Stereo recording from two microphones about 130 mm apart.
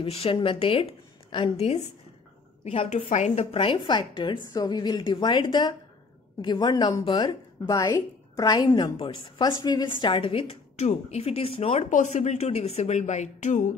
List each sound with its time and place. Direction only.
0.0 s a woman's voice: 45° left (ahead or behind)
2.6 s speech: 50° left (ahead or behind)
3.1 s a woman's voice: 60° left (ahead or behind)
11.9 s a woman's voice: 65° left (ahead or behind)